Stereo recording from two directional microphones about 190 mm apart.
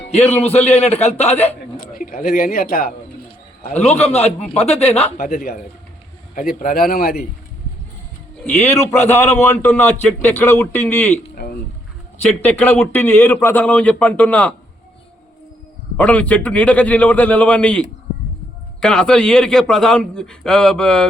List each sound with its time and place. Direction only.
0.1 s a man's voice: 35° left (ahead or behind)
1.8 s a man's voice: 50° left (ahead or behind)
3.6 s a man's voice: 35° left (ahead or behind)
5.1 s a man's voice: 50° left (ahead or behind)
8.4 s a man's voice: 10° left (ahead or behind)
12.2 s a man's voice: 10° left (ahead or behind)
16.0 s a man's voice: 5° left (ahead or behind)